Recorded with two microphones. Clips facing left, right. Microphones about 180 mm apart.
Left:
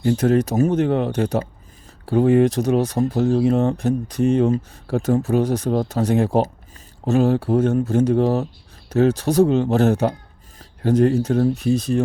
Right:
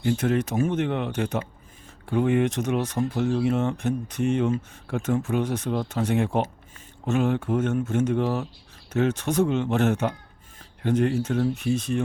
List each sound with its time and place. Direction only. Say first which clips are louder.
0.0 s speech: left 6 dB; 40° left (ahead or behind)